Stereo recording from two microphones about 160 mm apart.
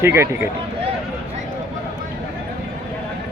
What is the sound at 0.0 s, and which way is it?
Speech, 15° right (ahead or behind).